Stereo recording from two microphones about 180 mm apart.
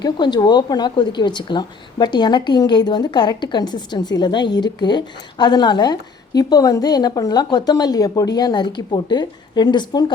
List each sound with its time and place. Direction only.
0.0 s a woman's voice: 25° left (ahead or behind)